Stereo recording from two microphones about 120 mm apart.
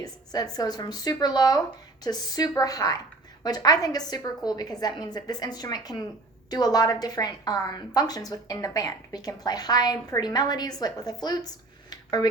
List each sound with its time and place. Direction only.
0.0 s a woman's voice: 35° left (ahead or behind)